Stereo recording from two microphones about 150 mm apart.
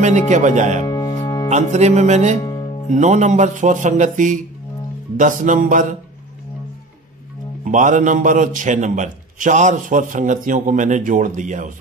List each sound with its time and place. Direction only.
0.0 s speech: 55° right (ahead or behind)
0.8 s music: 20° left (ahead or behind)
1.5 s speech: 50° right (ahead or behind)
2.4 s music: 25° left (ahead or behind)
2.9 s a man's voice: 55° right (ahead or behind)
7.6 s a man's voice: 55° right (ahead or behind)